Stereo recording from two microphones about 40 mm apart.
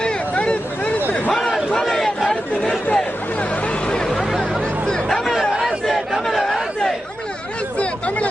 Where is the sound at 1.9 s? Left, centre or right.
Centre.